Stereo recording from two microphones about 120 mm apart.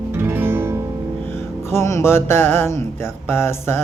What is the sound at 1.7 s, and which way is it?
Music, 25° left (ahead or behind).